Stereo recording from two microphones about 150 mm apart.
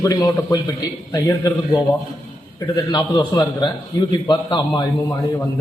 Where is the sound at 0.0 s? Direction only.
25° left (ahead or behind).